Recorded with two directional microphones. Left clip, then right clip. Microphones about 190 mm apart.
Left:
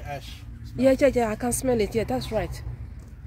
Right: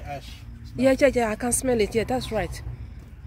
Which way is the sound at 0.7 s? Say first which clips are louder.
Even; centre (ahead or behind).